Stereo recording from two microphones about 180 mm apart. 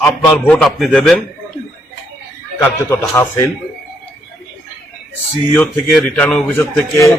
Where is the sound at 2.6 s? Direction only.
15° left (ahead or behind).